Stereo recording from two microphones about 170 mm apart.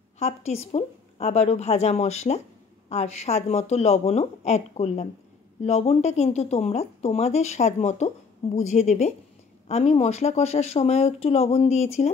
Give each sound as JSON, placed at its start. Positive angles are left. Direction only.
{"t": 0.2, "sound": "speech", "side_deg": 40}